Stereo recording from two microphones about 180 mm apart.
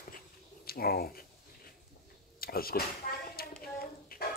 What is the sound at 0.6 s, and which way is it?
Speech, 55° left (ahead or behind).